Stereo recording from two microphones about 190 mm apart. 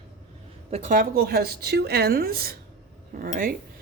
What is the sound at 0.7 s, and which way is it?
A woman's voice, 45° right (ahead or behind).